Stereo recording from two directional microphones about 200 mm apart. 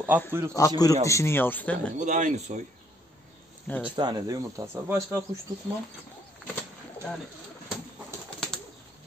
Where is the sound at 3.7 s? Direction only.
5° left (ahead or behind).